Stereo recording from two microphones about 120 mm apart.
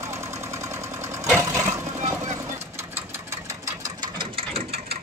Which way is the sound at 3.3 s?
25° right (ahead or behind).